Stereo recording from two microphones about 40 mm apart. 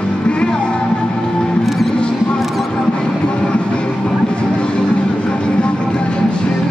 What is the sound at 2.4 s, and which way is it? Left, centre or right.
Music, centre.